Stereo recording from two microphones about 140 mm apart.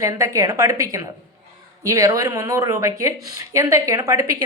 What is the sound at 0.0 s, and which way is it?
A woman's voice, 25° right (ahead or behind).